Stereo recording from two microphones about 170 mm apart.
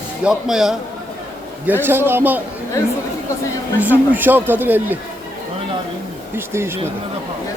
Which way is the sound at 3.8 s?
10° right (ahead or behind).